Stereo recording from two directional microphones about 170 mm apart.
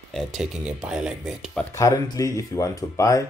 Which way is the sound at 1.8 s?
20° left (ahead or behind).